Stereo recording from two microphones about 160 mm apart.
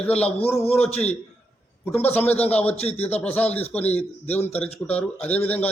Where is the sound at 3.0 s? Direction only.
10° left (ahead or behind).